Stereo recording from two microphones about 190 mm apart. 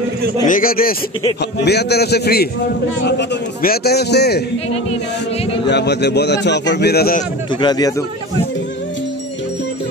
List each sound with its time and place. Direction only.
0.5 s speech: 50° left (ahead or behind)
1.6 s a man's voice: 60° left (ahead or behind)
5.7 s a man's voice: 65° left (ahead or behind)
7.6 s a man's voice: 20° left (ahead or behind)